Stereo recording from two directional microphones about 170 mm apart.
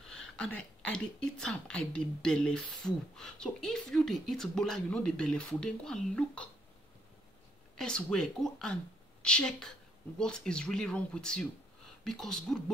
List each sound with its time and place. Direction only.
0.4 s speech: 5° left (ahead or behind)
7.7 s speech: 5° left (ahead or behind)